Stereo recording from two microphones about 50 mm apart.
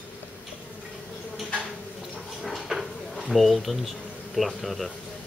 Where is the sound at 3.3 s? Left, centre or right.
Centre.